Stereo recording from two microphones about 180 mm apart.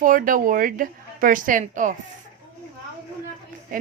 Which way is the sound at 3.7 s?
50° right (ahead or behind).